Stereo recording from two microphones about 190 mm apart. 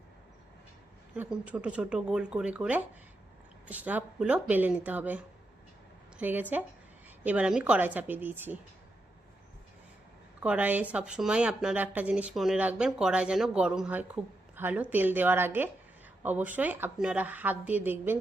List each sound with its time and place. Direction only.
1.1 s a woman's voice: 5° right (ahead or behind)
10.4 s speech: 5° right (ahead or behind)